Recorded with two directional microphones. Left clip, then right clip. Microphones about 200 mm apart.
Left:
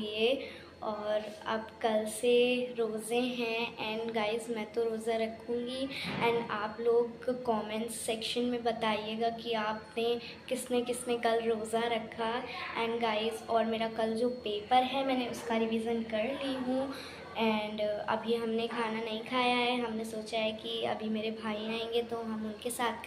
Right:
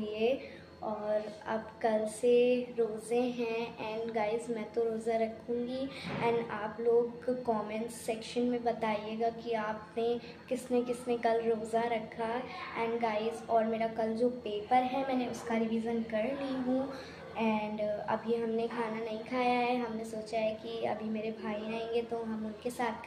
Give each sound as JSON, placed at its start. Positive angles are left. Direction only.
{"t": 0.0, "sound": "a woman's voice", "side_deg": -5}
{"t": 1.5, "sound": "a woman's voice", "side_deg": -10}